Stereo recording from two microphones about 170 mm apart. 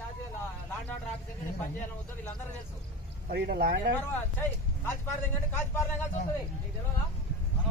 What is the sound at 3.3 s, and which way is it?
Speech, 65° right (ahead or behind).